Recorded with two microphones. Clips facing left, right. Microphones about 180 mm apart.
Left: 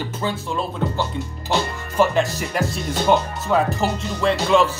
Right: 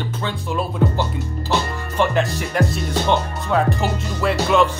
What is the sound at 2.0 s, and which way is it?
Music, centre (ahead or behind).